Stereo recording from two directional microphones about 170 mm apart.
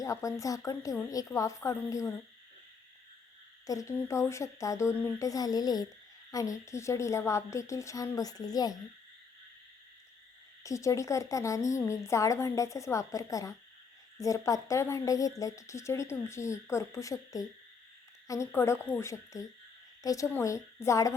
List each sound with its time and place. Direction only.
0.0 s a woman's voice: 20° left (ahead or behind)
3.7 s a woman's voice: 20° left (ahead or behind)
10.6 s a woman's voice: 20° left (ahead or behind)